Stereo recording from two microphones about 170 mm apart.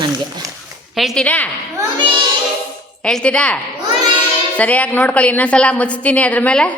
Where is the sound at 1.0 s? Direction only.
Centre (ahead or behind).